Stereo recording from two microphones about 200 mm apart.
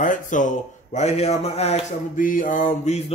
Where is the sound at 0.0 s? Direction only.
40° left (ahead or behind).